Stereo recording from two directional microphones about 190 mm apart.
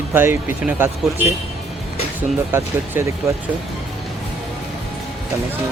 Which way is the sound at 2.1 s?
10° right (ahead or behind).